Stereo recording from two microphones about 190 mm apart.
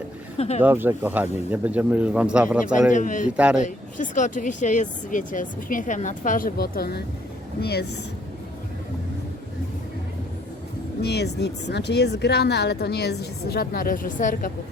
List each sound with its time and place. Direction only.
0.3 s speech: 35° left (ahead or behind)
0.6 s a man's voice: 10° right (ahead or behind)
2.9 s speech: 40° left (ahead or behind); by 7.9 s 60° left (ahead or behind)
11.0 s speech: 60° left (ahead or behind); by 14.5 s 45° left (ahead or behind)